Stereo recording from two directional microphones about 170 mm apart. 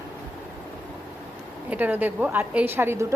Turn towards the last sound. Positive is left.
turn(degrees=-15)  # may be behind; listen again after turning